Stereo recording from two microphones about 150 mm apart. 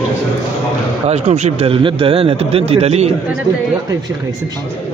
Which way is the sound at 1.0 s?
45° right (ahead or behind).